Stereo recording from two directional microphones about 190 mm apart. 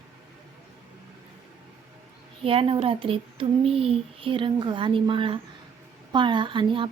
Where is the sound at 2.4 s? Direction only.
30° right (ahead or behind).